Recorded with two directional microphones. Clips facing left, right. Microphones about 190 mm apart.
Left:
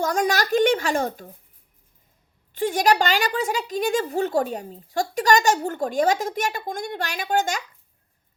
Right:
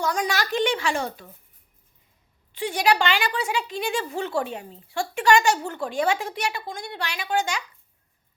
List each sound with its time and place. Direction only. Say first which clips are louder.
0.0 s a woman's voice: left 3 dB; 45° left (ahead or behind)
2.6 s a woman's voice: left 2 dB; 45° left (ahead or behind)